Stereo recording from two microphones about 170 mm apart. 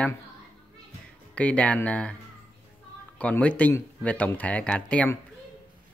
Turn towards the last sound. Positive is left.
turn(degrees=10)  # may be behind; listen again after turning